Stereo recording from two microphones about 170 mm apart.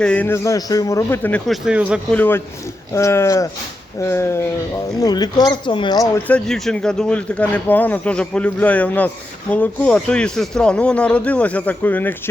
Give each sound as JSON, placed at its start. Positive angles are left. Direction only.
{"t": 0.0, "sound": "speech", "side_deg": 5}
{"t": 1.5, "sound": "speech", "side_deg": -5}
{"t": 2.0, "sound": "speech", "side_deg": 10}
{"t": 6.2, "sound": "speech", "side_deg": 5}